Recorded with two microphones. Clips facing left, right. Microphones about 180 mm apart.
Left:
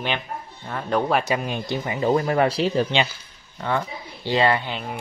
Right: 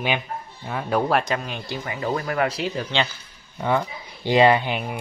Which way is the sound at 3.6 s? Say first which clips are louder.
Right 2 dB; 15° right (ahead or behind).